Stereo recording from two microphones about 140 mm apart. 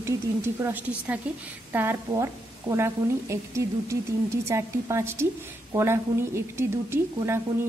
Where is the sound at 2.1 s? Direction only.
25° right (ahead or behind).